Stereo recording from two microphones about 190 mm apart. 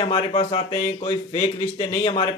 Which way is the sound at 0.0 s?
25° left (ahead or behind).